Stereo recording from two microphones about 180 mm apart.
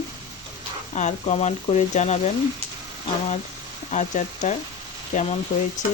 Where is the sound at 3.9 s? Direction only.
40° left (ahead or behind).